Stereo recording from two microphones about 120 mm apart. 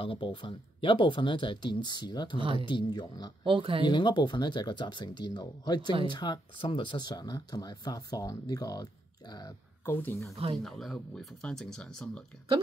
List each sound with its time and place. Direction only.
0.0 s speech: 50° left (ahead or behind)
3.4 s speech: 45° right (ahead or behind)
3.8 s speech: 40° left (ahead or behind)
5.8 s speech: 50° right (ahead or behind)
6.0 s speech: 40° left (ahead or behind)
9.8 s speech: 20° left (ahead or behind)
10.3 s speech: 55° right (ahead or behind)
10.6 s speech: centre (ahead or behind)